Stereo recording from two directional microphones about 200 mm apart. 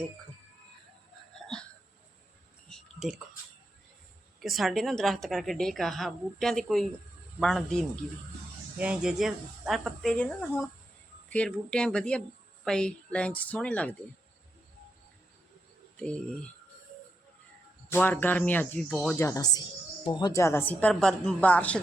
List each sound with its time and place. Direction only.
1.4 s hiccup: centre (ahead or behind)
2.6 s a sound: centre (ahead or behind)
4.4 s a woman's voice: centre (ahead or behind)
16.0 s a woman's voice: 5° left (ahead or behind)
17.8 s a woman's voice: 10° left (ahead or behind)
19.1 s a woman's voice: 15° left (ahead or behind)